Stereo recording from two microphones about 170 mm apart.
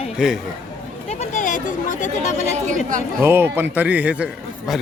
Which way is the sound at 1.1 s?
45° left (ahead or behind).